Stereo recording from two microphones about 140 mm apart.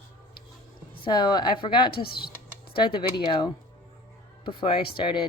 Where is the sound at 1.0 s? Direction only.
30° left (ahead or behind).